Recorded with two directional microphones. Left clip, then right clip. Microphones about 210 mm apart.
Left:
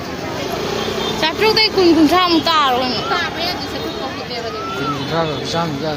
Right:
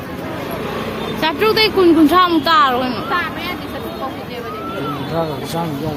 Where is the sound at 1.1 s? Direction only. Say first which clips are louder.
Right 1 dB; 50° right (ahead or behind).